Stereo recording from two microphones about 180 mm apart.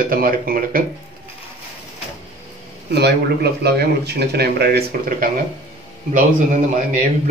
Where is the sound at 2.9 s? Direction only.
65° right (ahead or behind).